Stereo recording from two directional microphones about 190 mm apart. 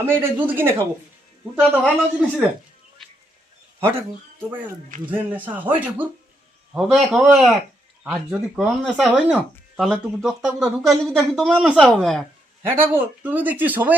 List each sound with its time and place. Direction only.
0.0 s speech: 10° right (ahead or behind)
1.8 s speech: 5° left (ahead or behind)
3.8 s speech: 15° right (ahead or behind)
5.1 s speech: 10° right (ahead or behind)
12.6 s speech: 10° right (ahead or behind)